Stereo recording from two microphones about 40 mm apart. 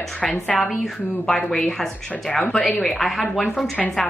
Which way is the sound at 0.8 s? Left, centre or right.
Centre.